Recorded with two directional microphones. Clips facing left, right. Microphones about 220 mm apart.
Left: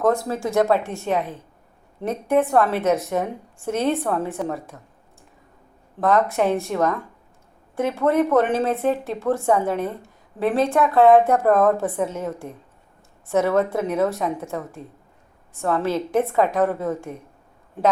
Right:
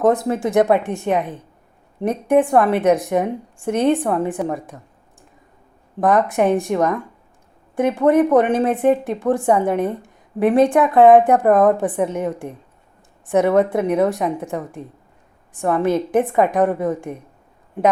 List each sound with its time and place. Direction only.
0.0 s speech: 20° right (ahead or behind)
6.0 s speech: 15° right (ahead or behind)